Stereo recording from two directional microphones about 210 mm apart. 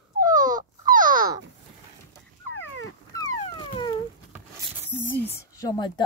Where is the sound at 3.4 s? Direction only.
25° left (ahead or behind).